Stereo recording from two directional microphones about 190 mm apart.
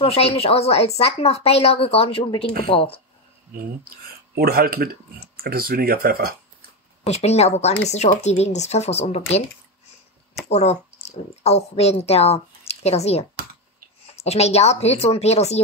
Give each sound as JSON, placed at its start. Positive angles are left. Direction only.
{"t": 0.0, "sound": "speech", "side_deg": 30}
{"t": 3.5, "sound": "speech", "side_deg": -50}
{"t": 7.1, "sound": "speech", "side_deg": 35}
{"t": 10.5, "sound": "a woman's voice", "side_deg": 35}